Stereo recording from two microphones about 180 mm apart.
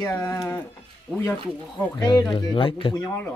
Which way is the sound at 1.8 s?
15° left (ahead or behind).